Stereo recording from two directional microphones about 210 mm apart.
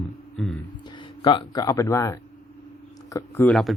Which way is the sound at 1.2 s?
20° left (ahead or behind).